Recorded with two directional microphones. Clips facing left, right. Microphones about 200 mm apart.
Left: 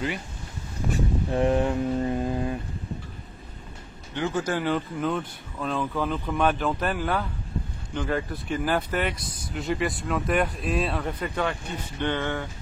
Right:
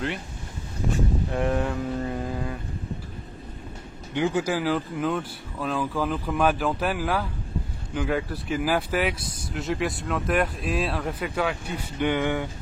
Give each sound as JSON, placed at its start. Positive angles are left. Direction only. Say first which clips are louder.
{"t": 1.3, "sound": "mantra", "louder": "left 5 dB", "side_deg": 20}
{"t": 4.1, "sound": "speech", "louder": "right 3 dB", "side_deg": -15}